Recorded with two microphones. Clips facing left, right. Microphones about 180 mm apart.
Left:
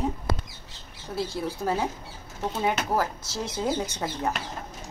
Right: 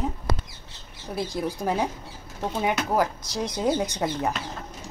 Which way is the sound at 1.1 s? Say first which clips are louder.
Right 1 dB; 15° right (ahead or behind).